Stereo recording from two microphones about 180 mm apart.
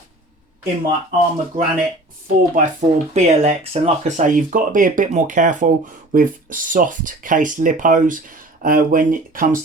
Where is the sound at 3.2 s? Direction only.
35° right (ahead or behind).